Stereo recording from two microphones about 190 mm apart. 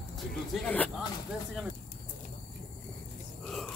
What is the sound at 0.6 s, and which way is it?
Speech, 10° left (ahead or behind).